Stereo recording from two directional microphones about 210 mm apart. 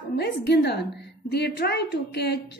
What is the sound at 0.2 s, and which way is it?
A woman's voice, 50° left (ahead or behind).